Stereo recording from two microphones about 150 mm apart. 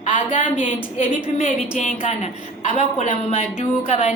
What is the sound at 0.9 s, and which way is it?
Speech, 45° left (ahead or behind).